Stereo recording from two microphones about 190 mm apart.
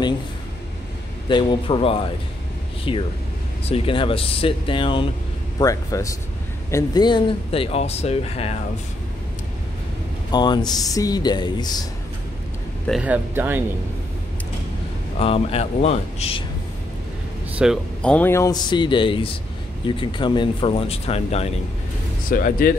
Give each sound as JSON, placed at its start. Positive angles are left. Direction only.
{"t": 1.3, "sound": "speech", "side_deg": 30}
{"t": 5.6, "sound": "speech", "side_deg": 15}
{"t": 10.3, "sound": "speech", "side_deg": 25}
{"t": 12.8, "sound": "speech", "side_deg": -5}
{"t": 15.1, "sound": "speech", "side_deg": 30}
{"t": 17.5, "sound": "a sound", "side_deg": -5}
{"t": 18.0, "sound": "speech", "side_deg": 10}
{"t": 22.3, "sound": "speech", "side_deg": 50}